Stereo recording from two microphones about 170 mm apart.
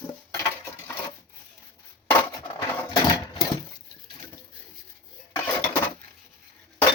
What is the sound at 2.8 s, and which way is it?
Sewing machine, 25° left (ahead or behind).